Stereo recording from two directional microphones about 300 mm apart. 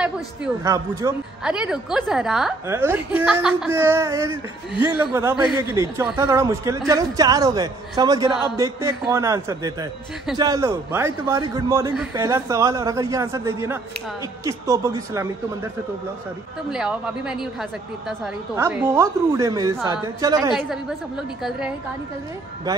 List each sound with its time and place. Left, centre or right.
0.7 s a man's voice: centre
16.7 s a woman's voice: centre
21.4 s a woman's voice: centre